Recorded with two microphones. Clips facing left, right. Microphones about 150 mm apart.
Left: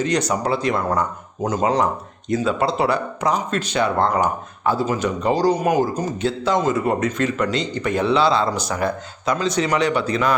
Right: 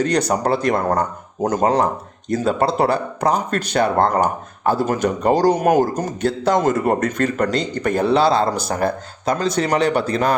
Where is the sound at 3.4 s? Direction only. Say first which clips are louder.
Right 2 dB; 50° right (ahead or behind).